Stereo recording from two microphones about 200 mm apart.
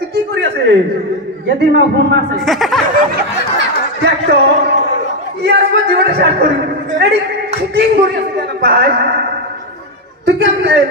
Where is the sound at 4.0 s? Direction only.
55° right (ahead or behind).